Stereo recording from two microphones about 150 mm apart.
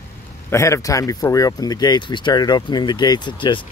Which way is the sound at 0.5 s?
20° left (ahead or behind).